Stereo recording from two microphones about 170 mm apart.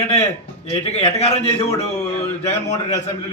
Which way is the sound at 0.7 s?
40° left (ahead or behind).